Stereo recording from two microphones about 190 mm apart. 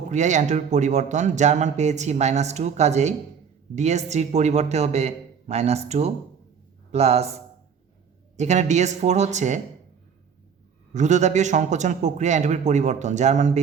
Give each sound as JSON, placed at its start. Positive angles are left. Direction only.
{"t": 0.1, "sound": "speech", "side_deg": -40}
{"t": 8.4, "sound": "speech", "side_deg": -40}
{"t": 10.9, "sound": "speech", "side_deg": -40}